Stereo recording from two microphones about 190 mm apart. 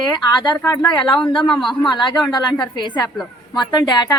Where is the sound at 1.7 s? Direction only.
25° left (ahead or behind).